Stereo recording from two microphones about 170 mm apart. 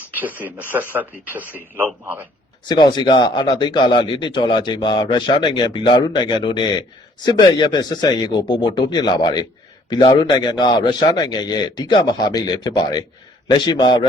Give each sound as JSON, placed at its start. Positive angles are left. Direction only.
{"t": 0.1, "sound": "a man's voice", "side_deg": -10}
{"t": 2.6, "sound": "speech", "side_deg": 25}